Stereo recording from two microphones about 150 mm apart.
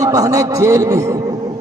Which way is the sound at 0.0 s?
25° right (ahead or behind).